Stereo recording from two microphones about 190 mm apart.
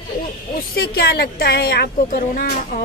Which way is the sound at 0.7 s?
55° left (ahead or behind).